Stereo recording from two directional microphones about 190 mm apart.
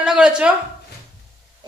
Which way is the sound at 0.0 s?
5° right (ahead or behind).